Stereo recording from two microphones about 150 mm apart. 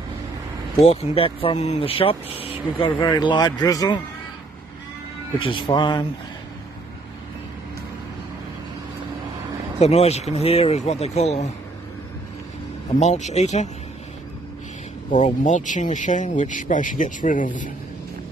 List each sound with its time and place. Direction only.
0.8 s speech: 40° left (ahead or behind)
5.4 s speech: 35° left (ahead or behind)
9.8 s speech: 45° left (ahead or behind)
13.0 s speech: 50° left (ahead or behind)
15.0 s speech: 55° left (ahead or behind)